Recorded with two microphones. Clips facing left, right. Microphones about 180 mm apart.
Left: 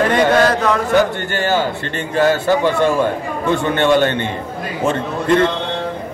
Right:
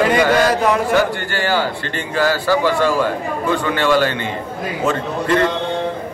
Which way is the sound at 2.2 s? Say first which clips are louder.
Left 2 dB; 20° left (ahead or behind).